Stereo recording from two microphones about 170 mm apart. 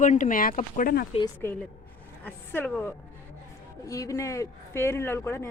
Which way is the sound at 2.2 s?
10° left (ahead or behind).